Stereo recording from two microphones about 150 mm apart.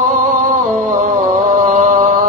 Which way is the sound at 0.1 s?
60° right (ahead or behind).